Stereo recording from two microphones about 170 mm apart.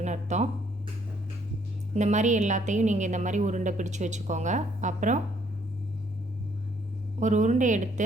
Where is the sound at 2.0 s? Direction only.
45° right (ahead or behind).